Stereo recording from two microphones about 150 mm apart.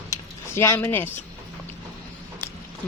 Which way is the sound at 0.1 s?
20° left (ahead or behind).